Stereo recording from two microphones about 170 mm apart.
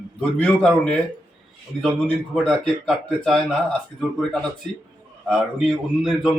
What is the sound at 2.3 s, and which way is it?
Speech, centre (ahead or behind).